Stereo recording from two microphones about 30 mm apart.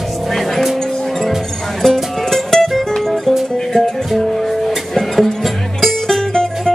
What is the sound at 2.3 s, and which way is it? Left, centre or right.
Music, centre.